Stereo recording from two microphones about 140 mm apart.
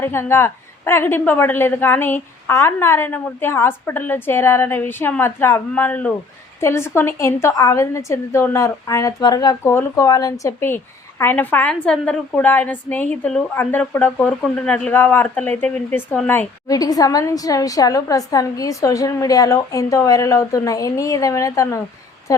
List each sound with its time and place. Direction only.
0.0 s a woman's voice: 15° left (ahead or behind)
16.6 s a woman's voice: 25° left (ahead or behind)